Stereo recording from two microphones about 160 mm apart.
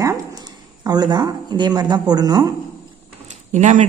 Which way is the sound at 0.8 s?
25° right (ahead or behind).